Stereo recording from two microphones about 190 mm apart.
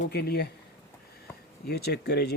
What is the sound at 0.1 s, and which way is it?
Speech, 55° left (ahead or behind).